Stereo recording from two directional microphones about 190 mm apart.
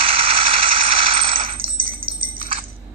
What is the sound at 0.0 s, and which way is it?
Coin, 30° right (ahead or behind).